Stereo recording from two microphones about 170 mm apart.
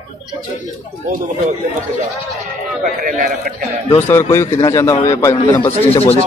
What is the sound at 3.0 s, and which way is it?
Speech, 55° right (ahead or behind).